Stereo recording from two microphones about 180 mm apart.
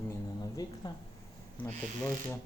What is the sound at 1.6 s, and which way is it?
Speech, 10° left (ahead or behind).